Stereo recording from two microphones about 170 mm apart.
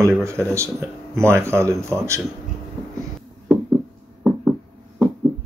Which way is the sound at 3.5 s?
10° right (ahead or behind).